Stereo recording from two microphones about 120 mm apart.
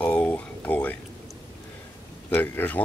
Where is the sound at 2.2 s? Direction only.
15° left (ahead or behind).